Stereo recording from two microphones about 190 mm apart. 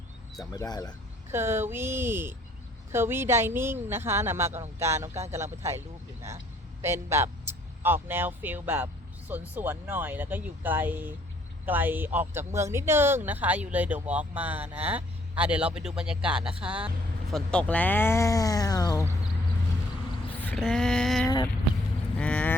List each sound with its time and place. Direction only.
0.5 s speech: 20° left (ahead or behind)
1.3 s a man's voice: 15° right (ahead or behind); by 19.0 s 20° left (ahead or behind)
20.6 s speech: centre (ahead or behind)
22.2 s vehicle: 5° left (ahead or behind)